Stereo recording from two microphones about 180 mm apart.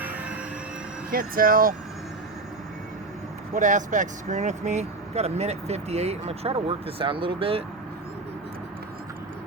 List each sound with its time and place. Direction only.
1.1 s speech: 50° right (ahead or behind)
3.5 s speech: 45° right (ahead or behind)